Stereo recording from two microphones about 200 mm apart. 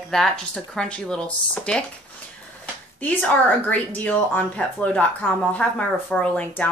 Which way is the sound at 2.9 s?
10° left (ahead or behind).